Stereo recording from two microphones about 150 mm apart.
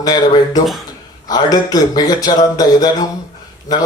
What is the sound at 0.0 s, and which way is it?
Speech, 25° left (ahead or behind).